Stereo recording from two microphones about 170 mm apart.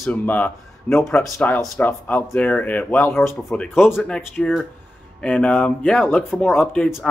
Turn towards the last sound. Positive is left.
turn(degrees=5)  # may be behind; listen again after turning